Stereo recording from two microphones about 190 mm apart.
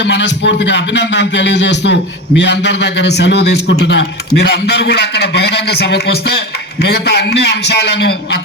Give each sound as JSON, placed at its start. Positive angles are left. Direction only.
{"t": 0.0, "sound": "a man's voice", "side_deg": 70}